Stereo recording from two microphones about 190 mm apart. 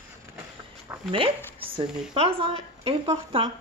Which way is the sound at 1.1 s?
30° right (ahead or behind).